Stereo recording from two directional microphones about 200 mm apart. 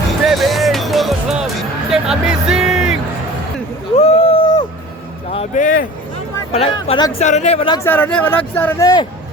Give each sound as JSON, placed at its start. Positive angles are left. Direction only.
{"t": 0.3, "sound": "music", "side_deg": 0}
{"t": 3.9, "sound": "a sound", "side_deg": 30}
{"t": 6.5, "sound": "speech", "side_deg": 30}
{"t": 7.9, "sound": "speech", "side_deg": 10}